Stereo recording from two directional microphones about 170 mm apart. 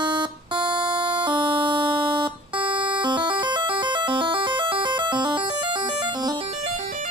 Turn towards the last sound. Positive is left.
turn(degrees=-25)  # may be behind; listen again after turning